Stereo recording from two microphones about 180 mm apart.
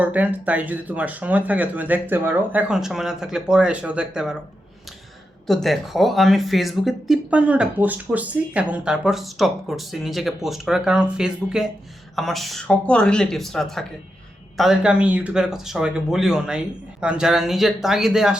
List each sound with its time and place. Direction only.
0.0 s speech: 10° right (ahead or behind)
5.5 s speech: centre (ahead or behind)